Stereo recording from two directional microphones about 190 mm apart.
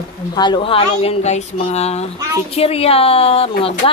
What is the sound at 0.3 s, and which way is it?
A woman's voice, 25° left (ahead or behind).